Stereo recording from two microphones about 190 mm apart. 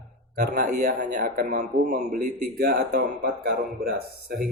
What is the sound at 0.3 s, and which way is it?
Speech, 50° right (ahead or behind).